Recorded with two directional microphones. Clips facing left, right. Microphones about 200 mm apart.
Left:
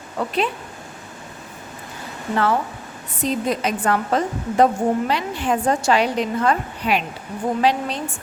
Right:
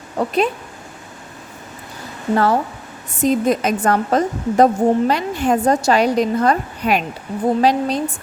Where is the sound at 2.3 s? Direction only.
40° right (ahead or behind).